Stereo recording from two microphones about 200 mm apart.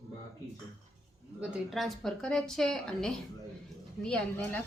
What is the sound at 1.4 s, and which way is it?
A woman's voice, centre (ahead or behind).